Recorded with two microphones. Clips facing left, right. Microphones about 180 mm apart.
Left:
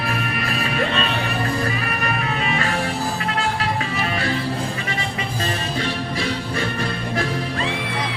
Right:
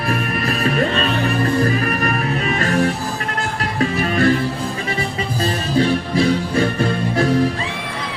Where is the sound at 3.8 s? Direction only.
50° right (ahead or behind).